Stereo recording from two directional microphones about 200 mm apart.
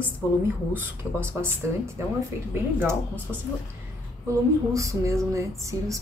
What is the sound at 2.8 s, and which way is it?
A woman's voice, 10° right (ahead or behind).